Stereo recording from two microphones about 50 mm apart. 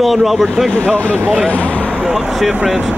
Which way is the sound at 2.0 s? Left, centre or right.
Centre.